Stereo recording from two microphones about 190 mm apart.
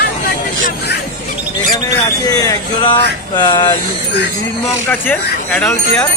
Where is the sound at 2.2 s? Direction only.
20° left (ahead or behind).